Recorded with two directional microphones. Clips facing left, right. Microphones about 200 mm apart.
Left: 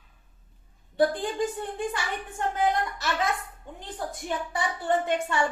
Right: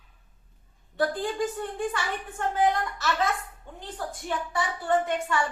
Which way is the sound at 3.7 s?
15° left (ahead or behind).